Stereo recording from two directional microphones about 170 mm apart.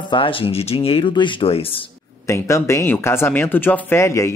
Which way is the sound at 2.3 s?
15° left (ahead or behind).